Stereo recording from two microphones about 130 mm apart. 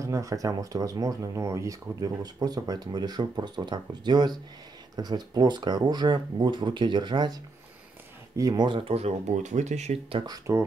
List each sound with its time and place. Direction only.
0.0 s speech: 25° right (ahead or behind)
8.4 s speech: 25° right (ahead or behind)
8.6 s speech: 45° right (ahead or behind); by 9.9 s 60° right (ahead or behind)
10.1 s speech: 30° right (ahead or behind)